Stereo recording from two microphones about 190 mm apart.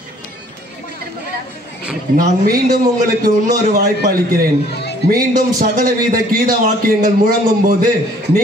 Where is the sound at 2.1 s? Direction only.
45° right (ahead or behind).